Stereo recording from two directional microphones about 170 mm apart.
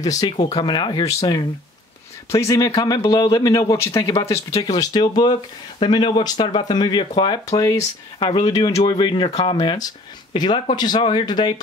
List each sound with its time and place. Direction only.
0.0 s speech: 20° left (ahead or behind)
0.4 s speech: 40° left (ahead or behind)
0.7 s speech: 25° left (ahead or behind)
4.1 s speech: 30° left (ahead or behind)